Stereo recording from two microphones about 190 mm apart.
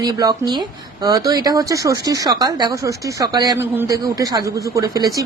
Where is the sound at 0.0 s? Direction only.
20° right (ahead or behind).